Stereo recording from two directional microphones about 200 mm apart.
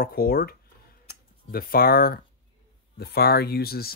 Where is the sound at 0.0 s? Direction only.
45° left (ahead or behind).